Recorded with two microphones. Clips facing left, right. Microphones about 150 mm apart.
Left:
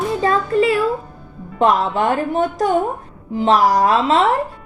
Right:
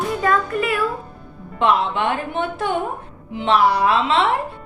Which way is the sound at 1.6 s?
40° left (ahead or behind).